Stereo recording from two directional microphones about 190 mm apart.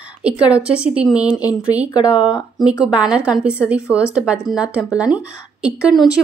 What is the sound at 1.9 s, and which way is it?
Speech, 25° left (ahead or behind).